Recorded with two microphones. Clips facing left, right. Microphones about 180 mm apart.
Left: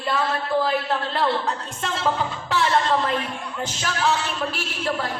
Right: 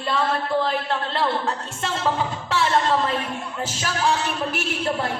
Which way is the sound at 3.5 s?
5° right (ahead or behind).